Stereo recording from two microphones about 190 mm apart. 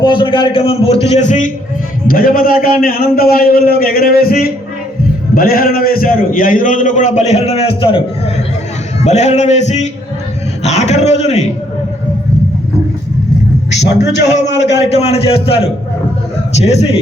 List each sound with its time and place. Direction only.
0.0 s a man's voice: 25° left (ahead or behind)
9.0 s a man's voice: 35° left (ahead or behind)
14.4 s a man's voice: 65° left (ahead or behind)
14.8 s speech: 35° left (ahead or behind)